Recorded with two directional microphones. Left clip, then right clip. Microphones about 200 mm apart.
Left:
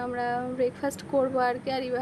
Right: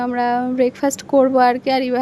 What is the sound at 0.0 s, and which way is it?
Speech, 40° right (ahead or behind).